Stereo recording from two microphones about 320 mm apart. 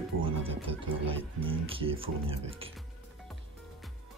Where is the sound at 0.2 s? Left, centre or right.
Centre.